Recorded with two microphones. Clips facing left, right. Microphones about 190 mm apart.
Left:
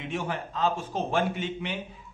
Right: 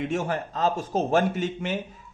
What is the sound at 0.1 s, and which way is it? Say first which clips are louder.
A man's voice: right 4 dB; 45° right (ahead or behind).